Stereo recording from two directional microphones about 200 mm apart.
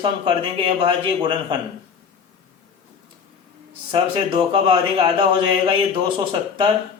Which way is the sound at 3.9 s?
25° right (ahead or behind).